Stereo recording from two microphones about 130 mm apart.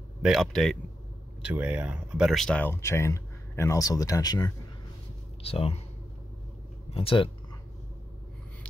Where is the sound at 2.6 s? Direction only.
20° left (ahead or behind).